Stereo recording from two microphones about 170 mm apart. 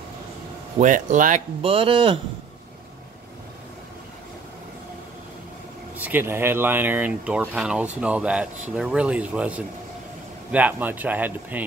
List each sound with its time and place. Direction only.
0.7 s speech: 50° right (ahead or behind)
1.6 s speech: 30° right (ahead or behind)
5.9 s speech: 10° right (ahead or behind)